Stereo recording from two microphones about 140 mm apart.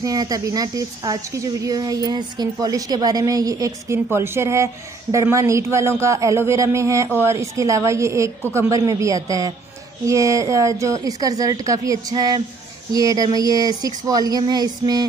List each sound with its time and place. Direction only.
0.0 s a woman's voice: 25° right (ahead or behind)